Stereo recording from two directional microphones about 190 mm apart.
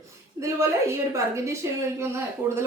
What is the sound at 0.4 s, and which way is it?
A woman's voice, 15° right (ahead or behind).